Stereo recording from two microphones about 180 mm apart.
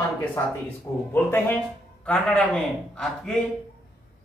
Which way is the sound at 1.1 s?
10° left (ahead or behind).